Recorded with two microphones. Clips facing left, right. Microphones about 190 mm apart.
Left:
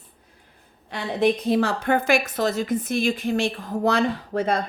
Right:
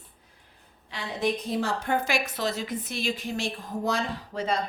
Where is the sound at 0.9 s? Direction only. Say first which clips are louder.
Left 7 dB; 60° left (ahead or behind).